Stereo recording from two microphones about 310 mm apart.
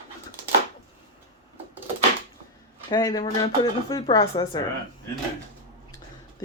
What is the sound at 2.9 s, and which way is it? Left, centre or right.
Speech, centre.